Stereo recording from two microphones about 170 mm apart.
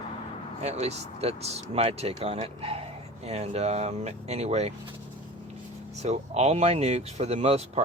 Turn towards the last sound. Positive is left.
turn(degrees=-40)  # may be behind; listen again after turning